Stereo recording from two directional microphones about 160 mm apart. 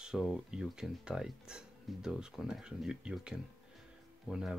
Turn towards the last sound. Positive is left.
turn(degrees=-5)  # may be behind; listen again after turning